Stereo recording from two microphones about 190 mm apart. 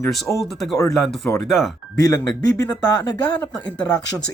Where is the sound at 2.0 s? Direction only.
15° left (ahead or behind).